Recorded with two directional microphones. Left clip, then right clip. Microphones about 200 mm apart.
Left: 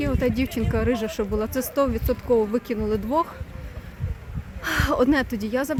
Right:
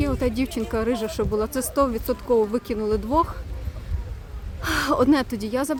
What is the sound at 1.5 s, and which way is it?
Speech, 15° right (ahead or behind).